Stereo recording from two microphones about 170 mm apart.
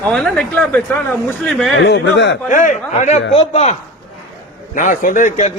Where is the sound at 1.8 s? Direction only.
90° left.